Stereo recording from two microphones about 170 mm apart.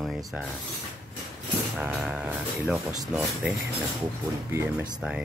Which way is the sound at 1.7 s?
5° right (ahead or behind).